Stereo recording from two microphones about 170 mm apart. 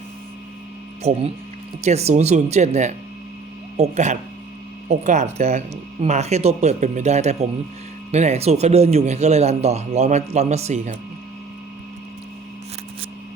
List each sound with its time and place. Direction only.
1.0 s speech: 40° right (ahead or behind)